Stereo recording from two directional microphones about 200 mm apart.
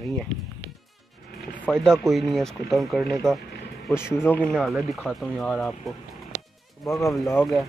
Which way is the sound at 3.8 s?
10° left (ahead or behind).